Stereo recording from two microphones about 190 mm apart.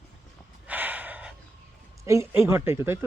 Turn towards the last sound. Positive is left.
turn(degrees=-15)  # may be behind; listen again after turning